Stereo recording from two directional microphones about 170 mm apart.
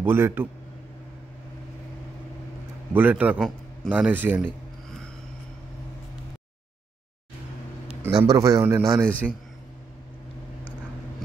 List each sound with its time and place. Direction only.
0.0 s a man's voice: 15° right (ahead or behind)
2.9 s a man's voice: 10° right (ahead or behind)
4.5 s a sound: 5° left (ahead or behind)
8.0 s a man's voice: 20° right (ahead or behind)